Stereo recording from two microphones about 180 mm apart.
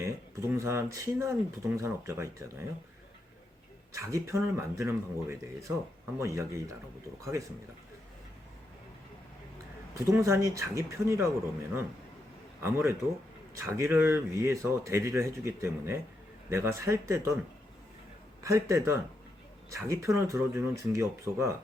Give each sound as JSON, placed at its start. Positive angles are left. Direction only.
{"t": 0.0, "sound": "speech", "side_deg": -15}
{"t": 3.9, "sound": "speech", "side_deg": -15}
{"t": 9.9, "sound": "speech", "side_deg": -15}
{"t": 12.6, "sound": "speech", "side_deg": -15}
{"t": 18.4, "sound": "speech", "side_deg": -15}